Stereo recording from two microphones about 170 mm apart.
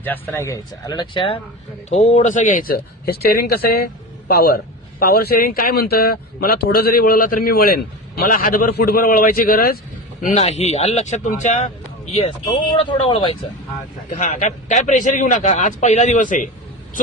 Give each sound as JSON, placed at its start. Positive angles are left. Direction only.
{"t": 0.0, "sound": "speech", "side_deg": 10}
{"t": 1.9, "sound": "a man's voice", "side_deg": 45}
{"t": 10.2, "sound": "speech", "side_deg": 40}
{"t": 12.7, "sound": "speech", "side_deg": 35}
{"t": 14.2, "sound": "a man's voice", "side_deg": 45}